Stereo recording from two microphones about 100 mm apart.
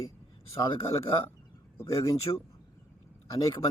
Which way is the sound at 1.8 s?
30° left (ahead or behind).